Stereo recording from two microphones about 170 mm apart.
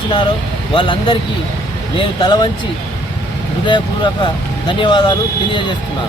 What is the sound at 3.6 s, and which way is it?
Speech, 25° left (ahead or behind).